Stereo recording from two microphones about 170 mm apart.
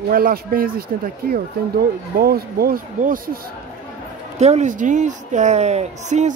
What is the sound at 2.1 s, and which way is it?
Speech, 60° right (ahead or behind).